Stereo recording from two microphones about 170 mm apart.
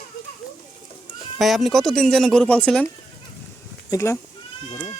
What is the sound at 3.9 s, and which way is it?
Speech, 15° left (ahead or behind).